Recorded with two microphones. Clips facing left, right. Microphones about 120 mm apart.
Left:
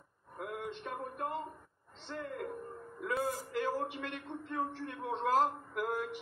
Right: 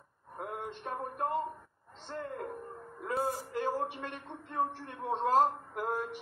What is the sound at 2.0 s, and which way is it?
A man's voice, 35° right (ahead or behind).